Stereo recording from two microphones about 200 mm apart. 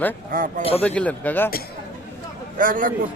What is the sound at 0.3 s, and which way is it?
Speech, 40° right (ahead or behind).